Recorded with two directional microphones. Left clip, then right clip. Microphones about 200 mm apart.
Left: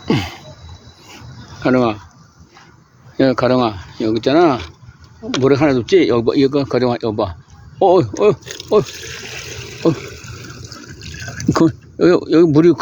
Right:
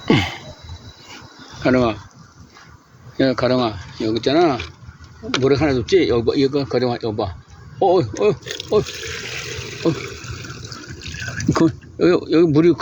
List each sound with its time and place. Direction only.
0.0 s a sound: centre (ahead or behind)
1.6 s speech: 25° left (ahead or behind)
3.2 s speech: 35° left (ahead or behind)
9.0 s water: 30° left (ahead or behind)